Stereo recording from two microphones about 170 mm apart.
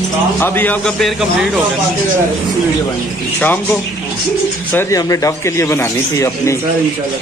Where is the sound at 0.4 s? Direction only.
10° left (ahead or behind).